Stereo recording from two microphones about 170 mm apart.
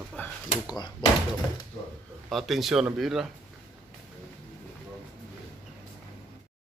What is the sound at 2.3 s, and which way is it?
Speech, centre (ahead or behind).